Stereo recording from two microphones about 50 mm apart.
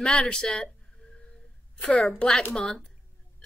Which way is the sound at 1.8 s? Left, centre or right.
Centre.